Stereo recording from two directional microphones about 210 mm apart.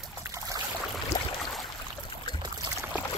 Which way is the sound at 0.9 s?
Centre (ahead or behind).